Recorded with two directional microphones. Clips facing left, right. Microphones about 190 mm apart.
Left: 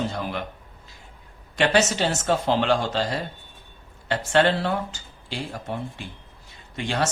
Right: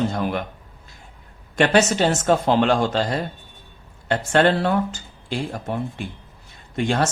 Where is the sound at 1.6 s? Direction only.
50° right (ahead or behind).